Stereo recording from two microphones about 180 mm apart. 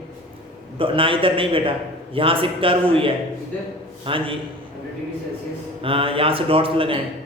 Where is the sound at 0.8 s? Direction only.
30° right (ahead or behind).